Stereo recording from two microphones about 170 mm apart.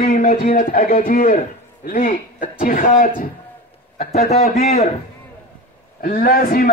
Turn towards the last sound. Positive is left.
turn(degrees=60)  # may be behind; listen again after turning